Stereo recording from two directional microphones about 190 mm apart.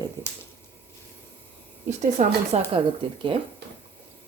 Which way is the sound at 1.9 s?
35° right (ahead or behind).